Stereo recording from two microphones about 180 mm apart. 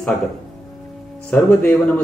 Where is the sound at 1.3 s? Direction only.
10° left (ahead or behind).